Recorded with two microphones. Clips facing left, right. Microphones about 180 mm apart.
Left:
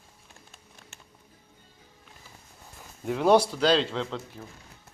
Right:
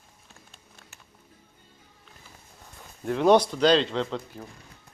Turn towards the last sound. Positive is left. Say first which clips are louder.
# right 3 dB
turn(degrees=0)  # may be behind; listen again after turning